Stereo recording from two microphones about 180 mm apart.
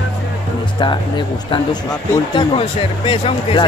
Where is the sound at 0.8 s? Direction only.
25° left (ahead or behind).